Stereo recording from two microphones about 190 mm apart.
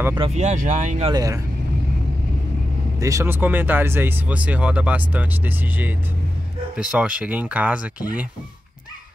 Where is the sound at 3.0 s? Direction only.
15° right (ahead or behind).